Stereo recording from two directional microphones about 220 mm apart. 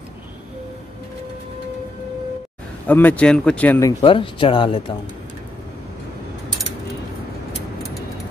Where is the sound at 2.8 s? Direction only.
10° left (ahead or behind).